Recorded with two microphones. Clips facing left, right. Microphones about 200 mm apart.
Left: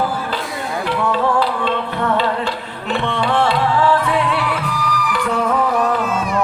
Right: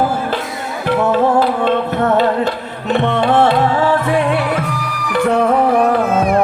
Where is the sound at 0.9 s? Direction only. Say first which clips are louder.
Right 5 dB; 45° right (ahead or behind).